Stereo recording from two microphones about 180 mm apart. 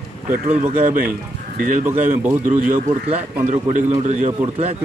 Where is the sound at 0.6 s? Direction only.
50° right (ahead or behind).